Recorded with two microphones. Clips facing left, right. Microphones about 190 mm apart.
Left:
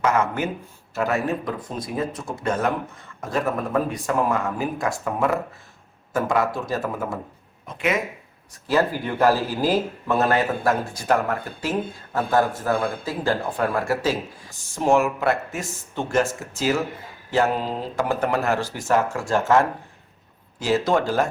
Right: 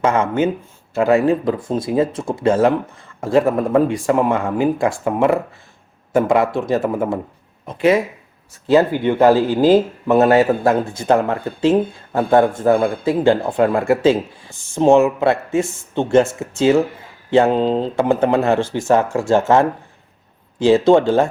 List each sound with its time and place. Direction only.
0.0 s speech: 30° right (ahead or behind)